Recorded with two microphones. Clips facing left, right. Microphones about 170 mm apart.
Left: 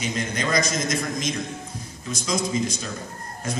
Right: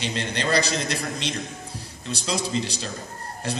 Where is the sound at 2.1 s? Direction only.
35° right (ahead or behind).